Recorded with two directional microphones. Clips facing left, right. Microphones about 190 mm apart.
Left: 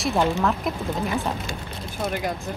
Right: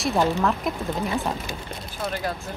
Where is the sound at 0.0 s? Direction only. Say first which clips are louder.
Even; centre (ahead or behind).